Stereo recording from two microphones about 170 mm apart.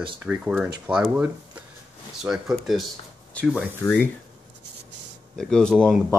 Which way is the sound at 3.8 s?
10° left (ahead or behind).